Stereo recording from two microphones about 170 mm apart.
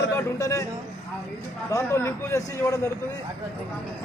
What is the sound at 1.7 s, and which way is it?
A man's voice, 15° left (ahead or behind).